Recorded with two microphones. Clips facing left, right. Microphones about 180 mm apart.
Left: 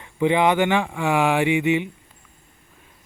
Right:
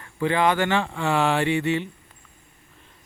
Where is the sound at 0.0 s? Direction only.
20° left (ahead or behind).